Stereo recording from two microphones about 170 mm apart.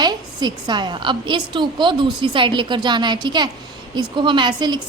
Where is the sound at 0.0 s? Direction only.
25° right (ahead or behind).